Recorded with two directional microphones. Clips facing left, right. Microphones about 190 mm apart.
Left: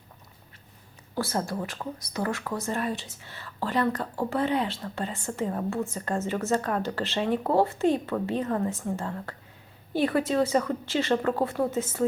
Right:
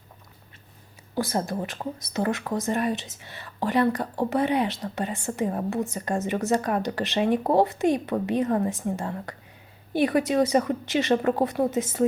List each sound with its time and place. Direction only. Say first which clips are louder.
1.1 s speech: right 2 dB; 15° right (ahead or behind)